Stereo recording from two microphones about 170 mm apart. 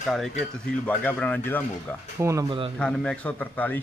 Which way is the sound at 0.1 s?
Centre (ahead or behind).